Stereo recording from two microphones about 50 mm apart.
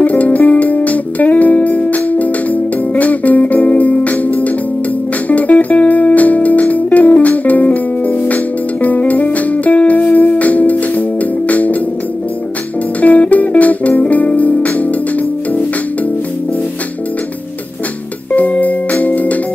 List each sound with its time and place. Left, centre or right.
0.0 s music: left
13.0 s music: left
18.3 s music: left